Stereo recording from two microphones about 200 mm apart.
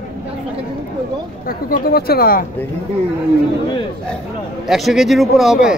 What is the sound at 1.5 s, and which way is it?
Speech, 50° left (ahead or behind).